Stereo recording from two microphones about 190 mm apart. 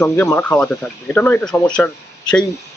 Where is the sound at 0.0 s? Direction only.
10° left (ahead or behind).